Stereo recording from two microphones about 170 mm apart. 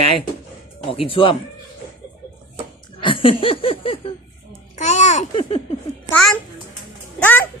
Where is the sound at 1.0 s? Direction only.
30° left (ahead or behind).